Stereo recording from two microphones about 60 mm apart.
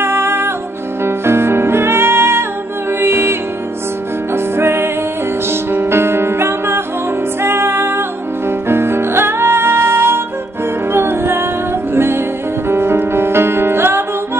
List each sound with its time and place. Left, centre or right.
0.0 s music: right
4.6 s music: right